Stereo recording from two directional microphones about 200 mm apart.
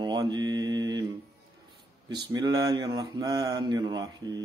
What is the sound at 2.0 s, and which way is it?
Mantra, 20° right (ahead or behind).